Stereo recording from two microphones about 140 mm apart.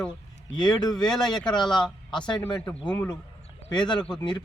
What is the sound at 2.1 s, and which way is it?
Speech, 35° left (ahead or behind).